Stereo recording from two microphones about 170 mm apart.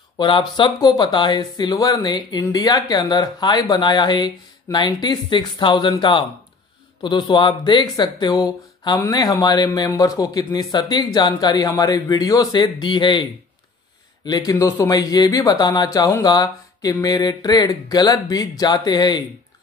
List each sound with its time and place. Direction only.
0.2 s speech: 25° left (ahead or behind)